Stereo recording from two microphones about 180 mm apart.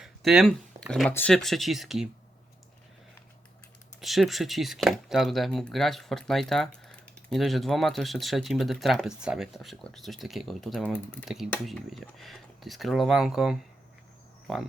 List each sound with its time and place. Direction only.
0.0 s a sound: centre (ahead or behind)
1.1 s speech: 5° left (ahead or behind)
4.0 s speech: centre (ahead or behind)